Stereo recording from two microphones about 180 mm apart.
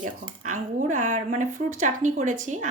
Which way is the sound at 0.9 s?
45° right (ahead or behind).